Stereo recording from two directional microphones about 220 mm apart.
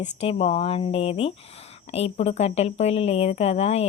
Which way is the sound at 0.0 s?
25° left (ahead or behind).